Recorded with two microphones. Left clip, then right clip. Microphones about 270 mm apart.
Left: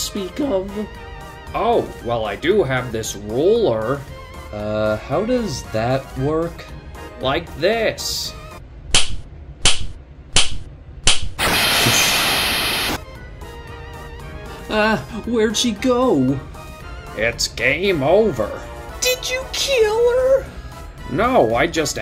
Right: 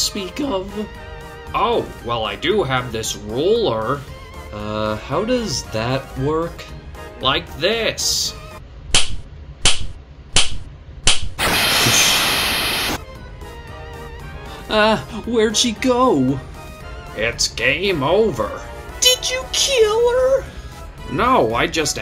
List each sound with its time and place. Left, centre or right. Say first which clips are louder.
0.0 s speech: right 1 dB; centre
1.6 s speech: left 1 dB; centre
8.9 s cap gun: even; centre
10.3 s a sound: even; centre
14.7 s speech: right 2 dB; centre
17.2 s speech: even; centre